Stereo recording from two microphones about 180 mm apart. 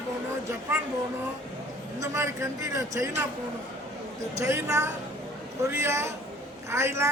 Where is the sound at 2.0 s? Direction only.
15° right (ahead or behind).